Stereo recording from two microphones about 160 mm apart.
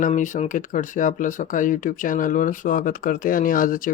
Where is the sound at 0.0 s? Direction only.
50° left (ahead or behind).